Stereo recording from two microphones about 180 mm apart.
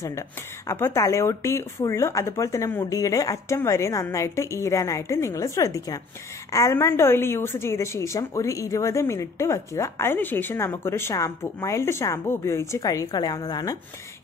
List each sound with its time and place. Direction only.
0.7 s a woman's voice: 15° left (ahead or behind)